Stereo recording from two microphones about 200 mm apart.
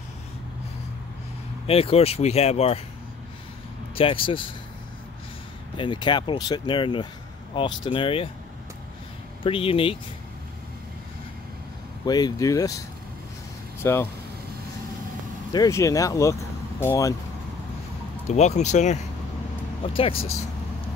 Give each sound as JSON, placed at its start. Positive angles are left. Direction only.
{"t": 1.7, "sound": "speech", "side_deg": 30}
{"t": 3.9, "sound": "speech", "side_deg": 25}
{"t": 5.8, "sound": "speech", "side_deg": 25}
{"t": 9.4, "sound": "speech", "side_deg": 25}
{"t": 12.1, "sound": "speech", "side_deg": 20}
{"t": 13.8, "sound": "speech", "side_deg": 10}
{"t": 15.5, "sound": "speech", "side_deg": 15}
{"t": 18.3, "sound": "speech", "side_deg": 35}